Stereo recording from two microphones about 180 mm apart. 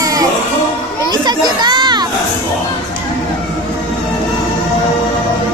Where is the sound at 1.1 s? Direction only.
25° right (ahead or behind).